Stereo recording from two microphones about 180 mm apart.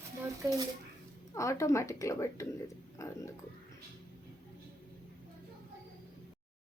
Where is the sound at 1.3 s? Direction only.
15° left (ahead or behind).